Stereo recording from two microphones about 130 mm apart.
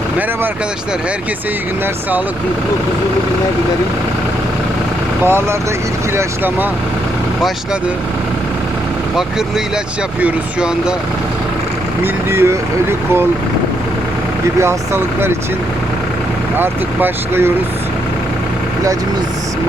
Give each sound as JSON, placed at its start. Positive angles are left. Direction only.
{"t": 5.2, "sound": "speech", "side_deg": -20}
{"t": 10.2, "sound": "speech", "side_deg": -10}
{"t": 12.3, "sound": "speech", "side_deg": -20}
{"t": 14.6, "sound": "speech", "side_deg": -20}
{"t": 16.6, "sound": "speech", "side_deg": -15}